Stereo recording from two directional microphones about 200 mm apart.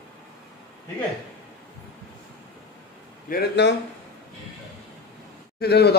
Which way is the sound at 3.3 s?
60° left (ahead or behind).